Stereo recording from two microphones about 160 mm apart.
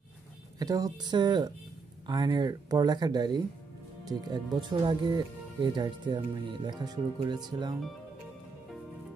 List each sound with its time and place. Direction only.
0.6 s speech: 20° right (ahead or behind)